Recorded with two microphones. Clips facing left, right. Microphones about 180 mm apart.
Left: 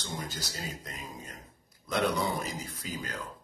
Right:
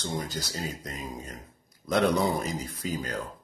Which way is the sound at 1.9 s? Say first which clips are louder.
Right 5 dB; 45° right (ahead or behind).